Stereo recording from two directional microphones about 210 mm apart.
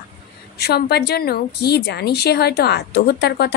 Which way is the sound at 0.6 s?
50° left (ahead or behind).